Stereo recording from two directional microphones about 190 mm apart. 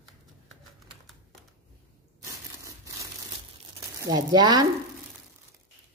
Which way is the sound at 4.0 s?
20° right (ahead or behind).